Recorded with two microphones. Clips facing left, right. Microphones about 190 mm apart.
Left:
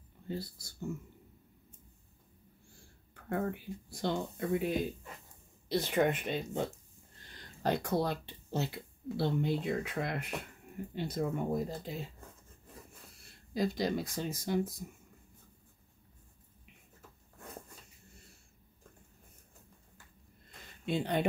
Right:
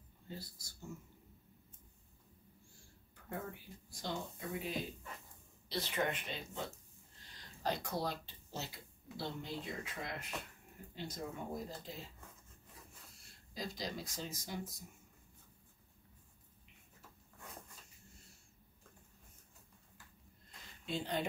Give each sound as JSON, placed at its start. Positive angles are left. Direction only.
{"t": 0.3, "sound": "speech", "side_deg": 65}
{"t": 3.3, "sound": "speech", "side_deg": 65}
{"t": 7.6, "sound": "speech", "side_deg": 60}
{"t": 13.5, "sound": "speech", "side_deg": 60}
{"t": 20.8, "sound": "speech", "side_deg": 65}